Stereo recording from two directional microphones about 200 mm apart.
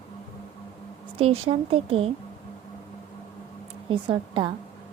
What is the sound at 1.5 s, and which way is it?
Speech, 30° right (ahead or behind).